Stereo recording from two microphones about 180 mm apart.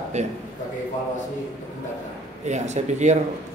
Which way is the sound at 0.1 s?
40° right (ahead or behind).